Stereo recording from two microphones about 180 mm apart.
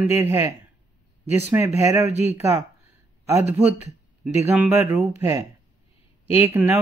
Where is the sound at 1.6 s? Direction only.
10° right (ahead or behind).